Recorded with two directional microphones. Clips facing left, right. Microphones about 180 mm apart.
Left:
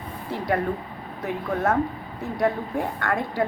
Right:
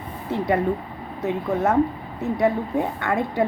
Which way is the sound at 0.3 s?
20° right (ahead or behind).